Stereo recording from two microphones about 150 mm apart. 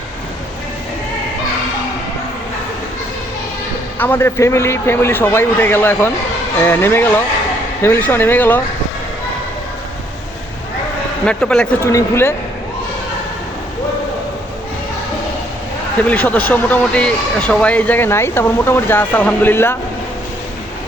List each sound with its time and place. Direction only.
3.9 s speech: 15° left (ahead or behind)
11.3 s speech: 5° left (ahead or behind)
16.0 s speech: 10° left (ahead or behind)